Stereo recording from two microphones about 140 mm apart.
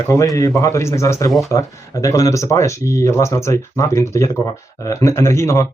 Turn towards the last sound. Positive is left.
turn(degrees=20)  # may be behind; listen again after turning